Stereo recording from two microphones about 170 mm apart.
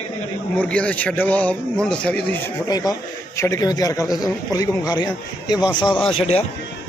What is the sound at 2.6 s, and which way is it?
A man's voice, 20° left (ahead or behind).